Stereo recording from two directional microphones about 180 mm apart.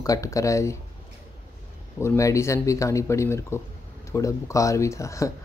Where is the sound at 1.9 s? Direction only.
15° left (ahead or behind).